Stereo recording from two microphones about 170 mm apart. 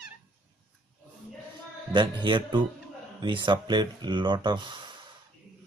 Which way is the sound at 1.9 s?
25° right (ahead or behind).